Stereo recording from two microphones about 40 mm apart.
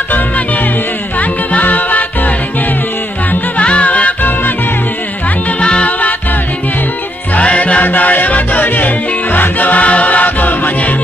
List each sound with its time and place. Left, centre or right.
1.2 s music: left
3.3 s music: left
5.6 s music: left
5.9 s music: left
7.3 s music: left
7.8 s music: left